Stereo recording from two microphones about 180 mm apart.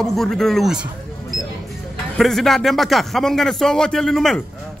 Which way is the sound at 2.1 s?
Centre (ahead or behind).